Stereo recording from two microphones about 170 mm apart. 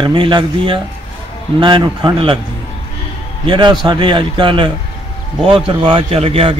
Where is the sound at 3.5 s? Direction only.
25° right (ahead or behind).